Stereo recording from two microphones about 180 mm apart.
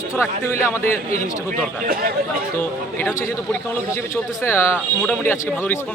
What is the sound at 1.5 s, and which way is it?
Speech, 50° right (ahead or behind).